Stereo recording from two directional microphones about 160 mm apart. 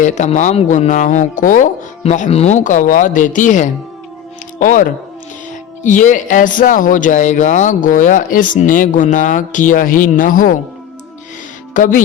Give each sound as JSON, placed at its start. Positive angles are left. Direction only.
{"t": 0.0, "sound": "speech", "side_deg": 50}
{"t": 11.7, "sound": "speech", "side_deg": 55}